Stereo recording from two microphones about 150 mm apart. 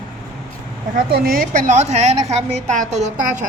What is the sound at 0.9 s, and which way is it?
A woman's voice, 80° right.